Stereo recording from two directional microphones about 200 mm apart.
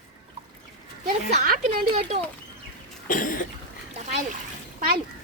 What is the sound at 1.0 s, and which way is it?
Speech, 45° right (ahead or behind).